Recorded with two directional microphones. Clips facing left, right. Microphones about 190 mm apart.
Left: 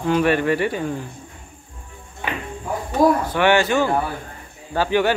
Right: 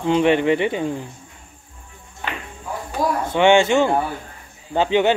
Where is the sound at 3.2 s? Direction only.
25° right (ahead or behind).